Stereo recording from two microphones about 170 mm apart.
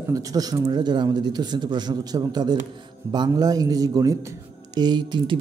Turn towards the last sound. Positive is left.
turn(degrees=-25)  # may be behind; listen again after turning